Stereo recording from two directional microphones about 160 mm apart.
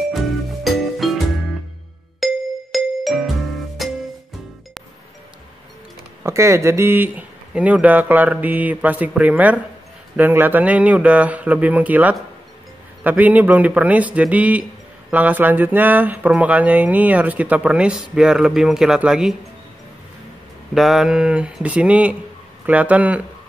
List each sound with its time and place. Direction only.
0.7 s music: centre (ahead or behind)
6.2 s a man's voice: 15° right (ahead or behind)
20.7 s a man's voice: centre (ahead or behind)